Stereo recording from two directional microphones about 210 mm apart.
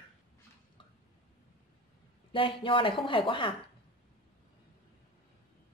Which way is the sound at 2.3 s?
25° left (ahead or behind).